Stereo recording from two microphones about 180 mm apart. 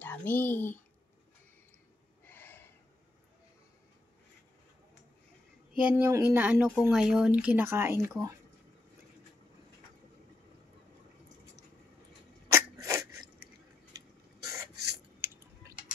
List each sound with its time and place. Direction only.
0.0 s speech: 10° left (ahead or behind)
2.2 s gasp: 10° left (ahead or behind)
5.8 s speech: 10° right (ahead or behind)
12.4 s sneeze: 15° right (ahead or behind)